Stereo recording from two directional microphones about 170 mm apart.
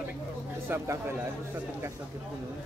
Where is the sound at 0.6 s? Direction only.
15° right (ahead or behind).